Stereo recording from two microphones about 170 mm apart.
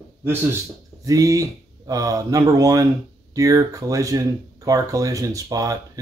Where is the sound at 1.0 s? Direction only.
20° right (ahead or behind).